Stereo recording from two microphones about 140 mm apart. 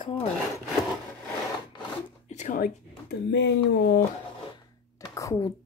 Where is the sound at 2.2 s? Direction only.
60° left (ahead or behind).